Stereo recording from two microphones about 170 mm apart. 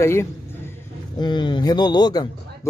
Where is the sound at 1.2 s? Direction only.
25° left (ahead or behind).